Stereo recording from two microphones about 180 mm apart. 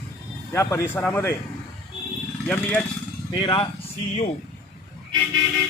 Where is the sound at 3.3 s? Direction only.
25° left (ahead or behind).